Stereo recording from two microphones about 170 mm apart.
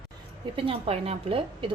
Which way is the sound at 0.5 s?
35° right (ahead or behind).